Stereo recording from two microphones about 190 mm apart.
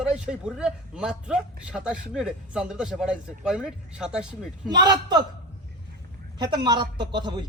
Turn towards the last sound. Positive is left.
turn(degrees=-25)  # may be behind; listen again after turning